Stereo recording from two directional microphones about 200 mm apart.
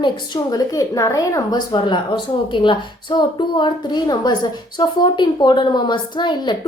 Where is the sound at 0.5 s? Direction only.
15° left (ahead or behind).